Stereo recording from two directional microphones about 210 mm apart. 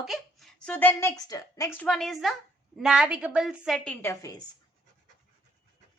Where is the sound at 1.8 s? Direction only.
5° left (ahead or behind).